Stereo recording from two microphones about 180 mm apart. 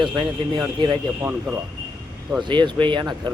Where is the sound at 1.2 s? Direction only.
10° right (ahead or behind).